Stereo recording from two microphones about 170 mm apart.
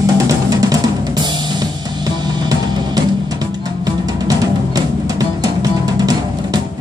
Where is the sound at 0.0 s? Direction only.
20° right (ahead or behind).